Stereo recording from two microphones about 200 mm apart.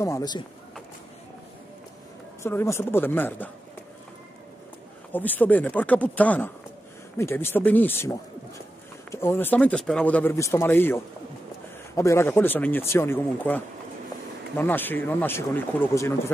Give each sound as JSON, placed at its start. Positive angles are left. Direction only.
{"t": 0.0, "sound": "speech", "side_deg": 15}
{"t": 2.4, "sound": "speech", "side_deg": 15}
{"t": 5.1, "sound": "speech", "side_deg": 10}
{"t": 14.6, "sound": "speech", "side_deg": 10}